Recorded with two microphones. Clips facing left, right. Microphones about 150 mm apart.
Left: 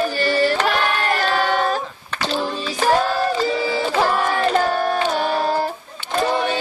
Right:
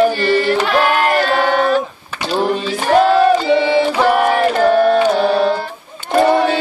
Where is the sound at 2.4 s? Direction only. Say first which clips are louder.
Right 5 dB; 70° right (ahead or behind).